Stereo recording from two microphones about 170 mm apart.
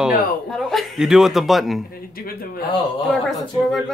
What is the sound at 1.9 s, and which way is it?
Speech, 60° left (ahead or behind).